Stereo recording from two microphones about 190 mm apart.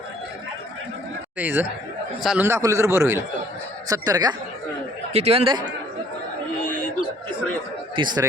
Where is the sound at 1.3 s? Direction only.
10° right (ahead or behind).